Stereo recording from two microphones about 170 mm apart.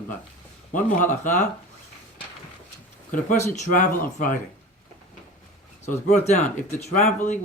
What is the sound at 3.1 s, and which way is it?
Speech, 45° left (ahead or behind).